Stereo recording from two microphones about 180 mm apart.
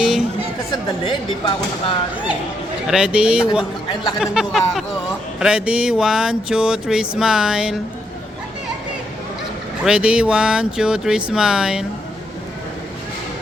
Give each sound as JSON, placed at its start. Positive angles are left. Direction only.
{"t": 0.0, "sound": "chatter", "side_deg": 0}
{"t": 0.7, "sound": "speech", "side_deg": 25}
{"t": 2.8, "sound": "speech", "side_deg": -5}
{"t": 9.8, "sound": "speech", "side_deg": -5}